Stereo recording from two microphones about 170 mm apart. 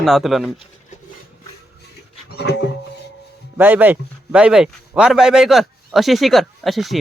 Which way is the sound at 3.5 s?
10° right (ahead or behind).